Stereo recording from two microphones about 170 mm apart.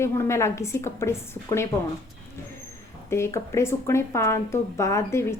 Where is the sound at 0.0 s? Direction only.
15° left (ahead or behind).